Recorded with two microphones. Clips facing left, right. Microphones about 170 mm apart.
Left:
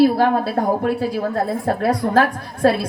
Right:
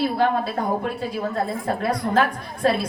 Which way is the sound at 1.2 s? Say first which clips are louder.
Left 4 dB; 50° left (ahead or behind).